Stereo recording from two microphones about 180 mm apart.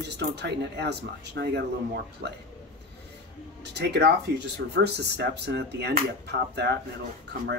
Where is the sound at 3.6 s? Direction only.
70° right (ahead or behind).